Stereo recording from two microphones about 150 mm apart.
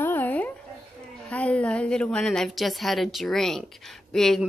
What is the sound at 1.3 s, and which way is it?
A woman's voice, 10° left (ahead or behind).